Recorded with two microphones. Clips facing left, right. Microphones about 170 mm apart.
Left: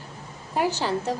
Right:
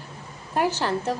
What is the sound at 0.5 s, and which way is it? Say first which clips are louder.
Speech: right 1 dB; 15° left (ahead or behind).